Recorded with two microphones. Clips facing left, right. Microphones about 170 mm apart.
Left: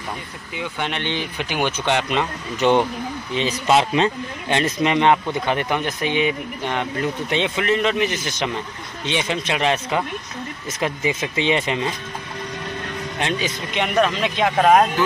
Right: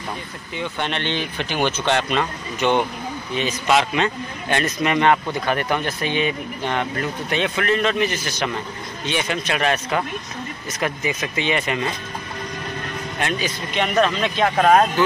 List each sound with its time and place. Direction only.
0.6 s speech: 10° left (ahead or behind)
3.3 s a man's voice: 30° left (ahead or behind)
13.2 s a man's voice: 25° left (ahead or behind)
13.9 s speech: 15° left (ahead or behind)